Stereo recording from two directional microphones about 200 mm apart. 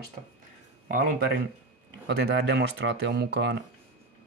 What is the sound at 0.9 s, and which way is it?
Speech, 45° right (ahead or behind).